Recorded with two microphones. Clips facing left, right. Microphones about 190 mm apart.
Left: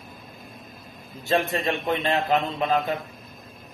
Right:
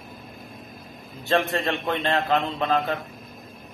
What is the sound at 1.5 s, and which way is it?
Speech, 10° left (ahead or behind).